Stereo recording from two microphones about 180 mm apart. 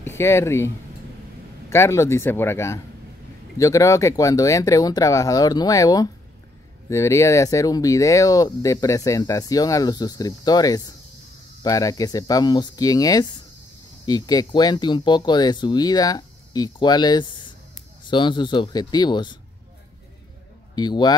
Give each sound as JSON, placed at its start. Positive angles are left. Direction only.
{"t": 0.2, "sound": "speech", "side_deg": 15}
{"t": 1.7, "sound": "speech", "side_deg": 15}
{"t": 20.7, "sound": "speech", "side_deg": 25}